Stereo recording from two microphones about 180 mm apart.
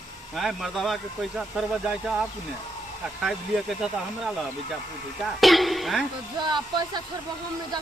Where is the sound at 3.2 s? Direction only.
Centre (ahead or behind).